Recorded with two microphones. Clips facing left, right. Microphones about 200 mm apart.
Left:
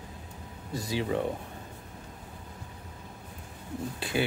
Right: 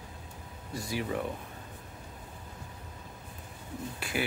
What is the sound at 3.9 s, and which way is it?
Speech, 25° left (ahead or behind).